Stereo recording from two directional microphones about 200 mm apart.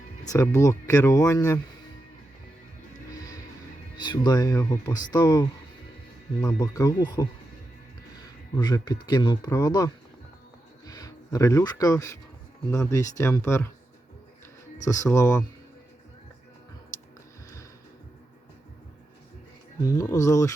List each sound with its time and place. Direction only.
0.3 s speech: 15° left (ahead or behind)
3.1 s music: 20° left (ahead or behind)
4.0 s speech: 20° left (ahead or behind)
8.5 s speech: 20° left (ahead or behind)
14.8 s speech: 15° left (ahead or behind)
19.8 s speech: 15° left (ahead or behind)